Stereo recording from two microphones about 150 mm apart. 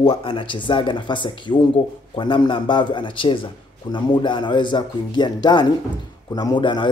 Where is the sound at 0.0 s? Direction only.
35° left (ahead or behind).